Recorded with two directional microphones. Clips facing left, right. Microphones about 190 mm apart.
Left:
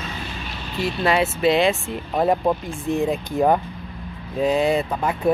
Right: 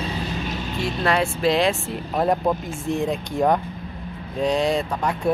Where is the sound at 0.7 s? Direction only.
5° left (ahead or behind).